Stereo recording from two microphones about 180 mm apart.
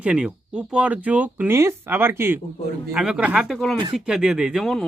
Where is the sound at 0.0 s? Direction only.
5° right (ahead or behind).